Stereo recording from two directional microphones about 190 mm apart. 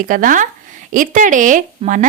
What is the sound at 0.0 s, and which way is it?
Speech, 45° right (ahead or behind).